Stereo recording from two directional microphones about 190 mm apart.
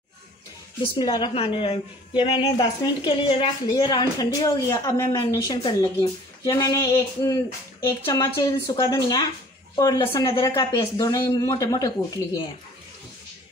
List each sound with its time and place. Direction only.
0.9 s a woman's voice: 25° left (ahead or behind)